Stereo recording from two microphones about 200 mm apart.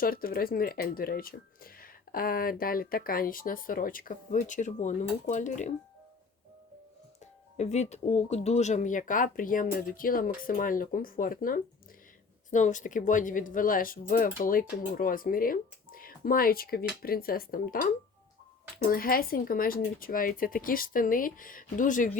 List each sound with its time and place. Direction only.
0.0 s speech: 45° left (ahead or behind)
7.5 s speech: 35° left (ahead or behind)